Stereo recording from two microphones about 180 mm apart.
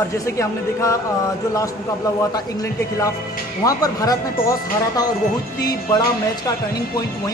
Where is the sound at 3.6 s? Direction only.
20° left (ahead or behind).